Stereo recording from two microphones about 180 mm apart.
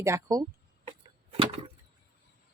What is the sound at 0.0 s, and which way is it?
Speech, 20° right (ahead or behind).